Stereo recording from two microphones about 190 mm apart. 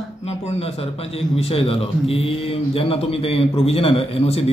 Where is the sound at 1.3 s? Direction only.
30° left (ahead or behind).